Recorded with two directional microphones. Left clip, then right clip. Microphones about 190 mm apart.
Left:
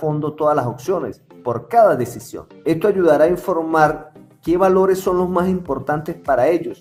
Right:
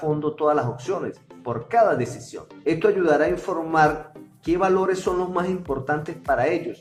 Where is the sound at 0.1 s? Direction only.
50° left (ahead or behind).